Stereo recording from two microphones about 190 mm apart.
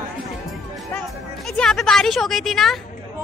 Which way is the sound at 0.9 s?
5° left (ahead or behind).